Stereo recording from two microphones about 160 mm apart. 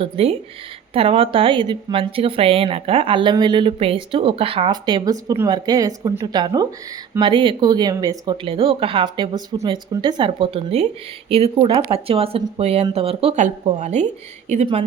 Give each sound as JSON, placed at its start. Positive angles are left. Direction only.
{"t": 0.0, "sound": "a woman's voice", "side_deg": -40}